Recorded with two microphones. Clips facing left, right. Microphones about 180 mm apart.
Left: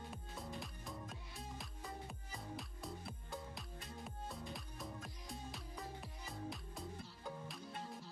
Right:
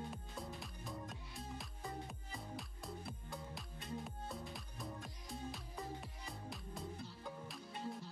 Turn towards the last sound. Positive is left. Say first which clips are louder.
# left 1 dB
turn(degrees=0)  # may be behind; listen again after turning